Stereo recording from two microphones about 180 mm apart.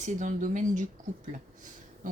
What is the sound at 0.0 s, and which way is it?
Speech, 45° right (ahead or behind).